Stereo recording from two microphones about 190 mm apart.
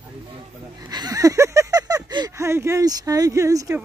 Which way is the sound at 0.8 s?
20° right (ahead or behind).